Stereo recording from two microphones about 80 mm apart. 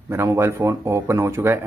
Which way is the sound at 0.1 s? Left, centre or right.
Right.